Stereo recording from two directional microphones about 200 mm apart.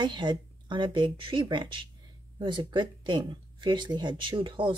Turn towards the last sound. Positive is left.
turn(degrees=-25)  # may be behind; listen again after turning